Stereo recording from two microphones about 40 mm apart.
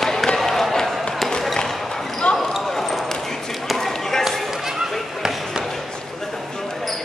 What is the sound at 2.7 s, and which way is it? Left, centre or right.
Clip-clop, centre.